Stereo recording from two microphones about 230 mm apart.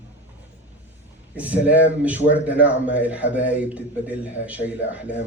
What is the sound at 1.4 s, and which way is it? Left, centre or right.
A man's voice, centre.